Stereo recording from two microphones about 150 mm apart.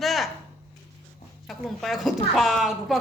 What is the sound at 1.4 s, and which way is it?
A woman's voice, centre (ahead or behind).